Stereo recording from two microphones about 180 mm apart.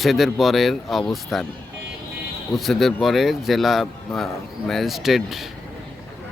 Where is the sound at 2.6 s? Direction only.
Centre (ahead or behind).